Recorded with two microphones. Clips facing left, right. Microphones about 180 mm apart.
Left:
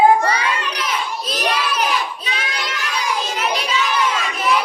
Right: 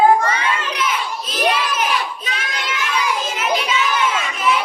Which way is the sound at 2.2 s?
40° left (ahead or behind).